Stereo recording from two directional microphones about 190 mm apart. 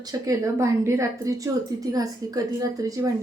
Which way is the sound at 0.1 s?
15° right (ahead or behind).